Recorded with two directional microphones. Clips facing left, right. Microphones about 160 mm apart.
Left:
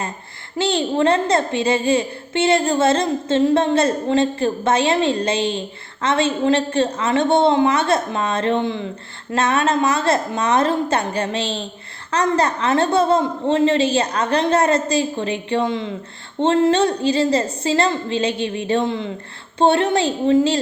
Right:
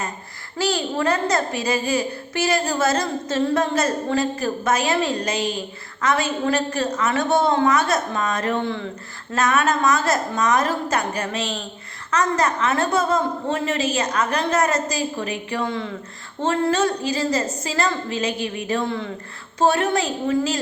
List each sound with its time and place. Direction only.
0.6 s a child's voice: 25° left (ahead or behind)